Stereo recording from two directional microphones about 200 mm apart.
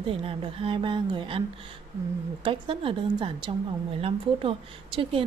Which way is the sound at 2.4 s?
25° right (ahead or behind).